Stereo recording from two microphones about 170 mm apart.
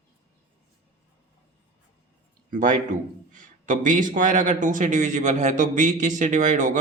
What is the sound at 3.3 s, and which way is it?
A man's voice, 50° right (ahead or behind).